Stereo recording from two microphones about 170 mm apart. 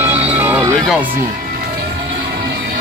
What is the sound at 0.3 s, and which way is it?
Music, 10° right (ahead or behind).